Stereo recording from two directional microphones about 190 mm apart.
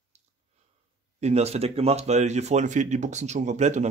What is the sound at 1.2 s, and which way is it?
Speech, 35° right (ahead or behind).